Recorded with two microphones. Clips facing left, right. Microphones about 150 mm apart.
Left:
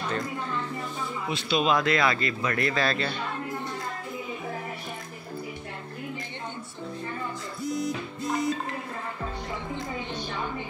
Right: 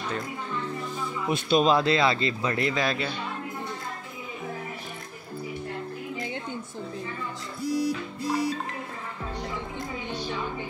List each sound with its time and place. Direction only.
1.3 s speech: 45° right (ahead or behind)
1.7 s speech: 30° right (ahead or behind); by 3.1 s 15° right (ahead or behind)